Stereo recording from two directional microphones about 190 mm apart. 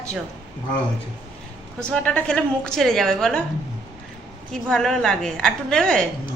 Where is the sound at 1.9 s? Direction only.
5° left (ahead or behind).